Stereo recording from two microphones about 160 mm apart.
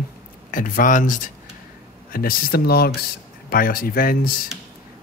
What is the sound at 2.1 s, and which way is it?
Speech, 70° left (ahead or behind).